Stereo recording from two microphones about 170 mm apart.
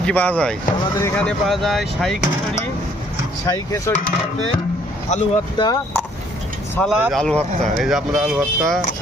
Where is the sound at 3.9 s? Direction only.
15° left (ahead or behind).